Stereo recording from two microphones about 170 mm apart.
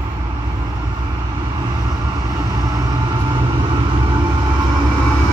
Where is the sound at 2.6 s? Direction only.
25° right (ahead or behind).